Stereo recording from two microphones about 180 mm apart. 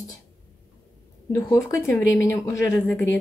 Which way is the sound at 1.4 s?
15° left (ahead or behind).